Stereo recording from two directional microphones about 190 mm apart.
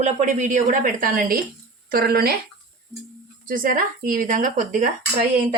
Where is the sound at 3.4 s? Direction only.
45° right (ahead or behind).